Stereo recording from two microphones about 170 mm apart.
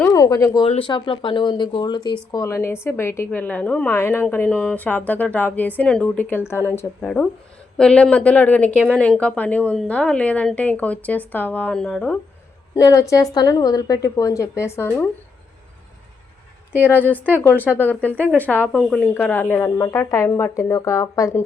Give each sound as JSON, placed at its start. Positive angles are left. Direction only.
{"t": 0.0, "sound": "a sound", "side_deg": 20}
{"t": 0.7, "sound": "a woman's voice", "side_deg": 30}
{"t": 7.0, "sound": "a woman's voice", "side_deg": 5}
{"t": 12.7, "sound": "speech", "side_deg": 20}
{"t": 16.7, "sound": "a woman's voice", "side_deg": 10}